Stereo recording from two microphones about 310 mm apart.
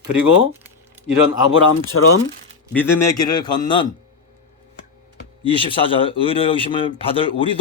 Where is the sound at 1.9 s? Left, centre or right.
Left.